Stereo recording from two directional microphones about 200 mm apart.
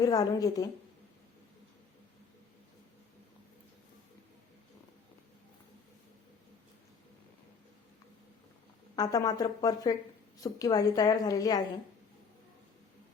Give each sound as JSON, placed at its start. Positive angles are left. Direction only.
{"t": 0.0, "sound": "a woman's voice", "side_deg": 20}
{"t": 9.0, "sound": "a woman's voice", "side_deg": 20}